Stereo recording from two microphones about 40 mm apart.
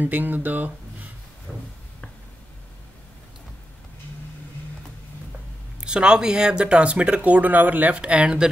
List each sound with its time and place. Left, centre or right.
0.0 s speech: right
1.5 s a sound: centre
5.8 s speech: right
7.2 s speech: right
8.0 s speech: right